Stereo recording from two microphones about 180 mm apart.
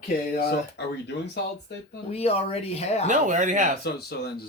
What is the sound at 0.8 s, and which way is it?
Speech, 65° left (ahead or behind).